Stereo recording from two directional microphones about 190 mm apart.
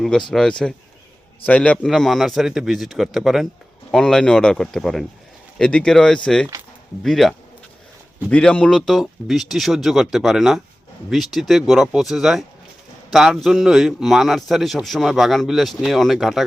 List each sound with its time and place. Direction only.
0.3 s a man's voice: 5° left (ahead or behind)